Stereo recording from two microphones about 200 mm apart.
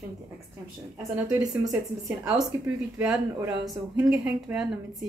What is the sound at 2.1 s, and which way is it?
A woman's voice, centre (ahead or behind).